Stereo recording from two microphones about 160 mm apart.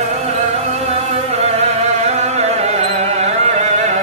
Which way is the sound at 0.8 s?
40° right (ahead or behind).